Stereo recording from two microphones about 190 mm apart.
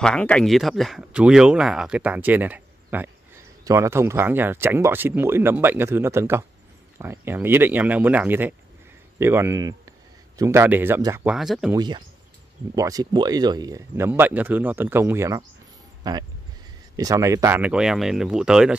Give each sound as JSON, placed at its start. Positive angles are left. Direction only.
{"t": 0.0, "sound": "speech", "side_deg": 5}
{"t": 11.3, "sound": "speech", "side_deg": 0}
{"t": 11.7, "sound": "speech", "side_deg": -25}